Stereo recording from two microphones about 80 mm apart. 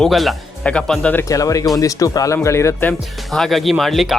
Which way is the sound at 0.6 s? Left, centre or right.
Centre.